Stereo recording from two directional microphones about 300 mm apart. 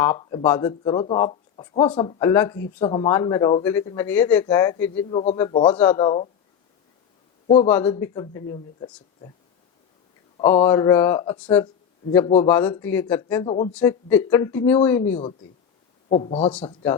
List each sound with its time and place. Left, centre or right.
0.0 s speech: centre
5.0 s a man's voice: left
7.4 s a man's voice: centre
10.7 s speech: centre
13.7 s speech: centre
16.0 s speech: centre